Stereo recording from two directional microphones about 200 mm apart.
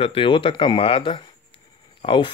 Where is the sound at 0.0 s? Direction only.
25° left (ahead or behind).